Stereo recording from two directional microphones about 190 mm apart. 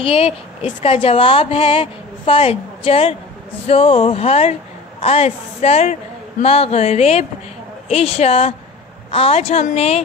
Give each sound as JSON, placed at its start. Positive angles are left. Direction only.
{"t": 0.0, "sound": "a woman's voice", "side_deg": 30}